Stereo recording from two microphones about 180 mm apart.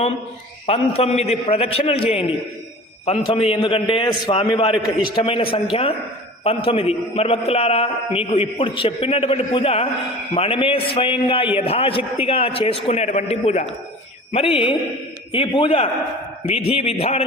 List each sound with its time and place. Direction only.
0.7 s a man's voice: 35° left (ahead or behind)